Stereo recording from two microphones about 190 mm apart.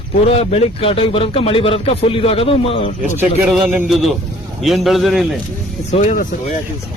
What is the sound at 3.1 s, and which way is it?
A man's voice, 5° right (ahead or behind).